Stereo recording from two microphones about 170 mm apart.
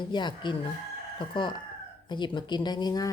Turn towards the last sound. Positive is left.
turn(degrees=25)  # may be behind; listen again after turning